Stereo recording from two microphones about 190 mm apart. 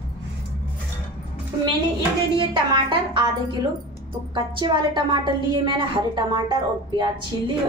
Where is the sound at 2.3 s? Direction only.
25° right (ahead or behind).